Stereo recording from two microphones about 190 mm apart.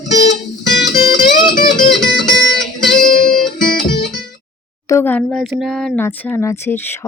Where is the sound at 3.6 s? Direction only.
55° left (ahead or behind).